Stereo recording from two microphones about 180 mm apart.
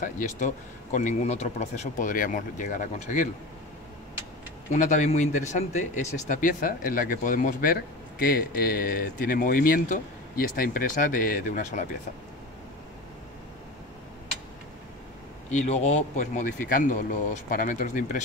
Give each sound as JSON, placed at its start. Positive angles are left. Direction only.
{"t": 0.0, "sound": "speech", "side_deg": 45}
{"t": 4.7, "sound": "speech", "side_deg": 45}
{"t": 15.5, "sound": "speech", "side_deg": 40}